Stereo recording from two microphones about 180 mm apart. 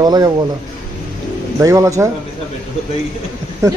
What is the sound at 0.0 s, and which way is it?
Speech, 20° right (ahead or behind).